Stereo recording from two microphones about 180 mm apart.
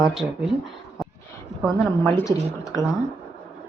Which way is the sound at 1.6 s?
5° left (ahead or behind).